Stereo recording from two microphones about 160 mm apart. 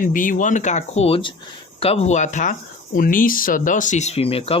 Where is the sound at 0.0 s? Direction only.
55° left (ahead or behind).